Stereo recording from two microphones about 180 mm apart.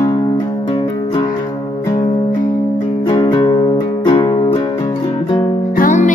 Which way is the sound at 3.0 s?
25° left (ahead or behind).